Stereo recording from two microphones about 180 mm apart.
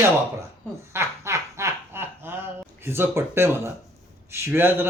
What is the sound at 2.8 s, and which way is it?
Speech, 15° right (ahead or behind).